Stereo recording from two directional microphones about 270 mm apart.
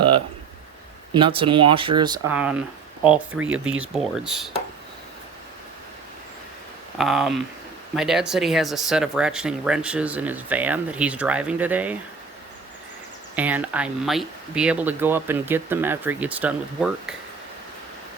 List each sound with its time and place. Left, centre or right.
1.1 s speech: centre
7.0 s speech: centre
13.3 s speech: centre